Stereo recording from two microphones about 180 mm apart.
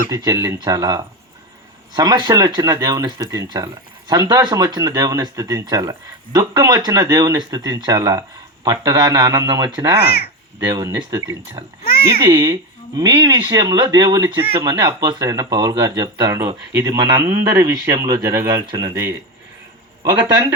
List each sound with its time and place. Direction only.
0.1 s speech: 20° right (ahead or behind)
10.0 s a child's voice: 60° left (ahead or behind)
10.7 s speech: 20° right (ahead or behind)
11.8 s speech: 55° left (ahead or behind)
12.3 s speech: 25° right (ahead or behind)
14.2 s speech: 10° right (ahead or behind)
14.5 s speech: 25° right (ahead or behind)